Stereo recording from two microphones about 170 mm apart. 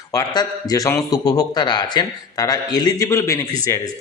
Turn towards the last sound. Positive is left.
turn(degrees=20)  # may be behind; listen again after turning